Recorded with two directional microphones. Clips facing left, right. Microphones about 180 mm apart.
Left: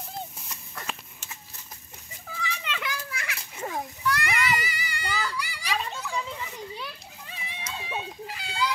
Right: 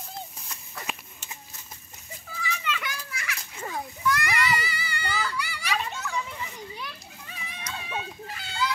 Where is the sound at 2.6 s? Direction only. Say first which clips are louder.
Even; 55° left (ahead or behind).